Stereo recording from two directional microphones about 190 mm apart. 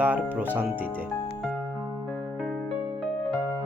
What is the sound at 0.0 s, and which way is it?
Speech, 10° right (ahead or behind).